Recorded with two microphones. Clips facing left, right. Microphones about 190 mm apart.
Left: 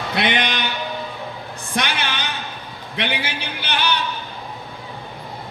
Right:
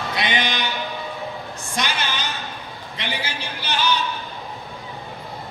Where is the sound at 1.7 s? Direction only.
60° left (ahead or behind).